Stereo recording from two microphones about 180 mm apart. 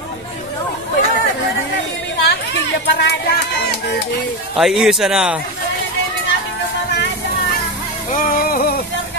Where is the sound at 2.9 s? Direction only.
65° left (ahead or behind).